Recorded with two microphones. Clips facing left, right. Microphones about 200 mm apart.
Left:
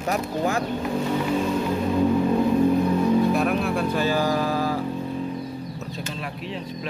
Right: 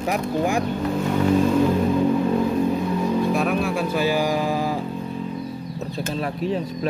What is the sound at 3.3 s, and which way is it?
Music, centre (ahead or behind).